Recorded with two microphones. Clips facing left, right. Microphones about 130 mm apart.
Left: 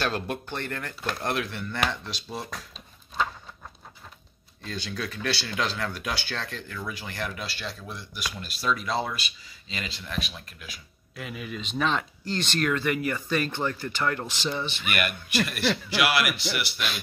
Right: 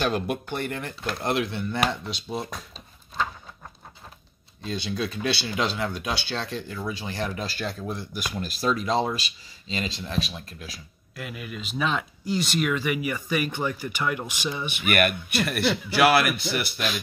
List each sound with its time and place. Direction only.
0.0 s speech: 10° right (ahead or behind)
4.6 s speech: 20° right (ahead or behind)
7.4 s speech: 45° right (ahead or behind)
11.1 s speech: centre (ahead or behind)
15.0 s a man's voice: 55° right (ahead or behind)